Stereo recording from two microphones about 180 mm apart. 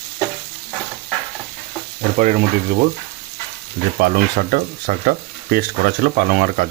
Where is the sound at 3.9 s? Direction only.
55° right (ahead or behind).